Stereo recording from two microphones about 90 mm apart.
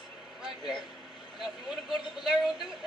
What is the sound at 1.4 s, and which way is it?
Speech, 5° right (ahead or behind).